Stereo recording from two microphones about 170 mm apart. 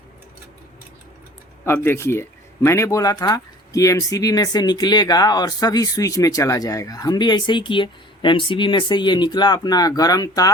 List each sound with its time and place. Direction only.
1.6 s speech: 15° left (ahead or behind)